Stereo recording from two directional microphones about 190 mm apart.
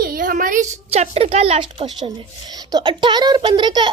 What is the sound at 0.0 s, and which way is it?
A child's voice, 50° right (ahead or behind).